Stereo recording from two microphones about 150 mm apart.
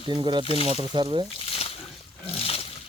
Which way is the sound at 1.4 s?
40° left (ahead or behind).